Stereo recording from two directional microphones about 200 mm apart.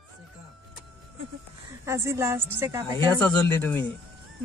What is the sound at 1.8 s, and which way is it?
A woman's voice, 15° right (ahead or behind).